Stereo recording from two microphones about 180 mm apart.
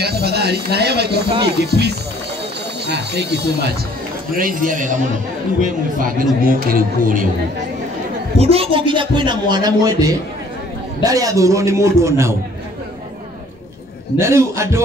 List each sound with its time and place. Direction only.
0.0 s speech: 65° right (ahead or behind)
4.4 s a man's voice: 50° right (ahead or behind)
8.4 s a man's voice: 30° right (ahead or behind); by 12.4 s 15° right (ahead or behind)
14.1 s a man's voice: 15° right (ahead or behind)